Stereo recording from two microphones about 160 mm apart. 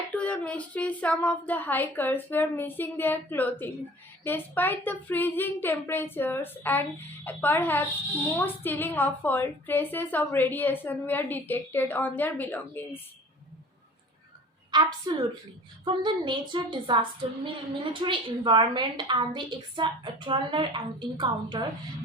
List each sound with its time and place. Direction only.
0.2 s a woman's voice: 10° left (ahead or behind)
14.7 s a woman's voice: 30° right (ahead or behind)